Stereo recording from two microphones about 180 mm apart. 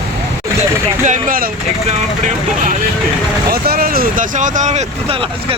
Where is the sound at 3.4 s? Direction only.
55° right (ahead or behind); by 5.2 s 40° right (ahead or behind).